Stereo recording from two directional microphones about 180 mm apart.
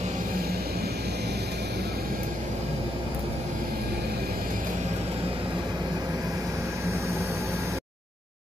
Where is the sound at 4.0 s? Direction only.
60° right (ahead or behind); by 7.8 s 15° right (ahead or behind).